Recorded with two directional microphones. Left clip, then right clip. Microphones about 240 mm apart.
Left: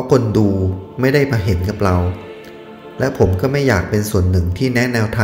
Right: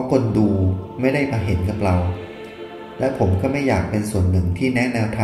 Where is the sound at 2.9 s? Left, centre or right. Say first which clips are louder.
Left 4 dB; left.